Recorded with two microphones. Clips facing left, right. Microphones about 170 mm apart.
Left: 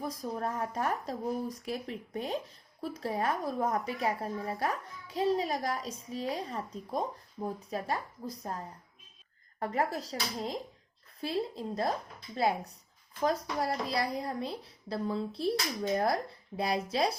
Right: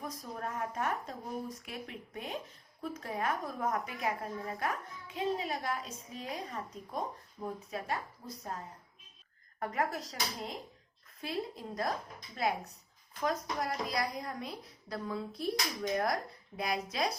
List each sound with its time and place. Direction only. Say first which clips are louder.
0.0 s speech: left 6 dB; 30° left (ahead or behind)
9.6 s speech: left 3 dB; 30° left (ahead or behind)